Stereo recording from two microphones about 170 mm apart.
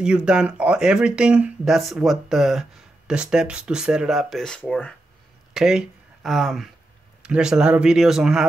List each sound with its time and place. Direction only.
0.0 s speech: 5° right (ahead or behind)
5.5 s speech: 5° right (ahead or behind)